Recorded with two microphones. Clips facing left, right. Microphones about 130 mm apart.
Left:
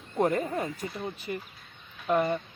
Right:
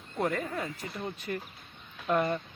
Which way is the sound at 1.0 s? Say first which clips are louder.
Left 1 dB; 5° left (ahead or behind).